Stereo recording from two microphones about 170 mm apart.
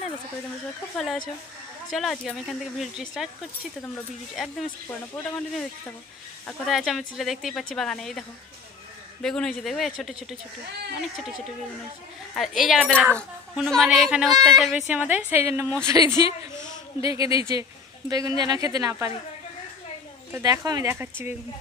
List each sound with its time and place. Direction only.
0.9 s speech: 5° left (ahead or behind)
4.4 s speech: centre (ahead or behind)
12.4 s a woman's voice: centre (ahead or behind); by 19.1 s 20° right (ahead or behind)
20.3 s a woman's voice: 20° right (ahead or behind)